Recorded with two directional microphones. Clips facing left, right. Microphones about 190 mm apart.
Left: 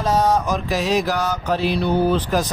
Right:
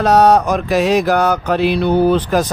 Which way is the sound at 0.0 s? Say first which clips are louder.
Right 7 dB; 70° right (ahead or behind).